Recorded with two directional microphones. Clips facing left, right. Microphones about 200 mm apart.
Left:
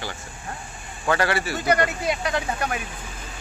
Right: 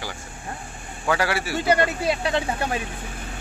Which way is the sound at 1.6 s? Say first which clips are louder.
Right 2 dB; 30° right (ahead or behind).